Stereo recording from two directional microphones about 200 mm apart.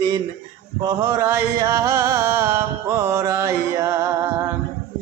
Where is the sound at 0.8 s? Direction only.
15° right (ahead or behind).